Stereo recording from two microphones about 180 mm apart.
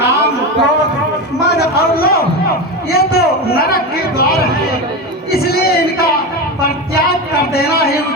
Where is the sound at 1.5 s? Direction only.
55° left (ahead or behind).